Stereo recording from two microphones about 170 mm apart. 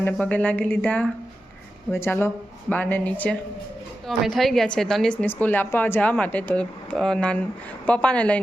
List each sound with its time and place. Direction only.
0.0 s a woman's voice: 10° left (ahead or behind)